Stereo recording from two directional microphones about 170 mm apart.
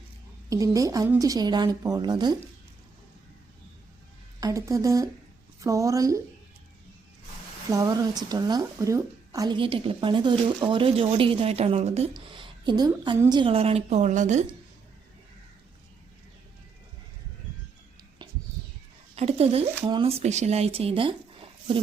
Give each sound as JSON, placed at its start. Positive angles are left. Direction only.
{"t": 0.5, "sound": "a woman's voice", "side_deg": -20}
{"t": 4.4, "sound": "a woman's voice", "side_deg": -20}
{"t": 7.7, "sound": "a woman's voice", "side_deg": -20}
{"t": 12.3, "sound": "a woman's voice", "side_deg": -30}
{"t": 19.1, "sound": "a sound", "side_deg": -35}
{"t": 19.9, "sound": "a woman's voice", "side_deg": -35}